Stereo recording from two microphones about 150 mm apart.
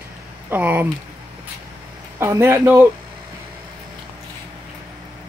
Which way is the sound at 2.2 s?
15° right (ahead or behind).